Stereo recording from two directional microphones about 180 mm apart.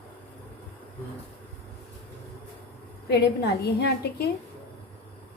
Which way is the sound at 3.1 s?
65° left (ahead or behind).